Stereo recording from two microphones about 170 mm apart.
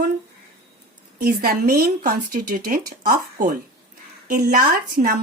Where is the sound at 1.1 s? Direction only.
60° right (ahead or behind).